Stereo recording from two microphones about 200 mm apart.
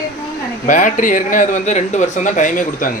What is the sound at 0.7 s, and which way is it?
A man's voice, 40° left (ahead or behind).